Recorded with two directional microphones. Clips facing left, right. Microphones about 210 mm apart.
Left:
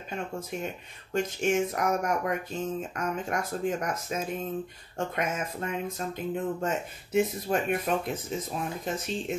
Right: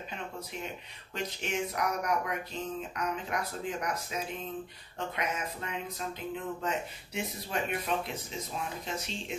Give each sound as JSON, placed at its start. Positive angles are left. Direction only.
{"t": 1.1, "sound": "speech", "side_deg": 50}